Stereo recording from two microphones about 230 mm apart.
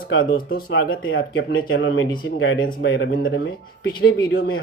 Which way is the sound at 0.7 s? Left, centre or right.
Left.